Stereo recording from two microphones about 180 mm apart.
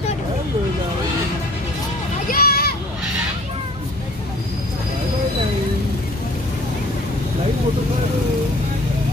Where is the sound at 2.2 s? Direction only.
55° left (ahead or behind).